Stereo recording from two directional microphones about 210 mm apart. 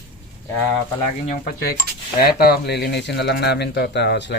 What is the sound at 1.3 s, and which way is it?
Speech, 45° left (ahead or behind).